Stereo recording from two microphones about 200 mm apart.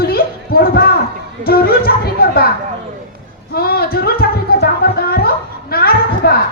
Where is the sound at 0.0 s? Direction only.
50° left (ahead or behind).